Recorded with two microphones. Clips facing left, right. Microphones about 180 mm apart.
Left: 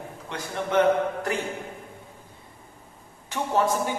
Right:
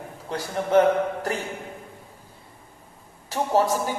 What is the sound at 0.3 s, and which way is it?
A man's voice, 35° right (ahead or behind).